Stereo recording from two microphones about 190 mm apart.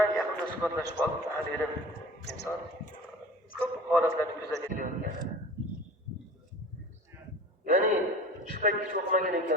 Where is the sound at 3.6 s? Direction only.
10° right (ahead or behind).